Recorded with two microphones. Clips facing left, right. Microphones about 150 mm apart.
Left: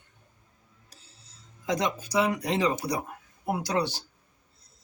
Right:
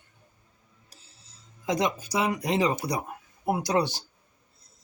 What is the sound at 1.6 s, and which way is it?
Speech, 15° right (ahead or behind).